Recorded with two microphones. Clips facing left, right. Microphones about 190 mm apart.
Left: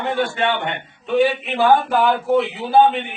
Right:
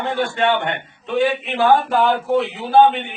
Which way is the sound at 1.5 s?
Centre (ahead or behind).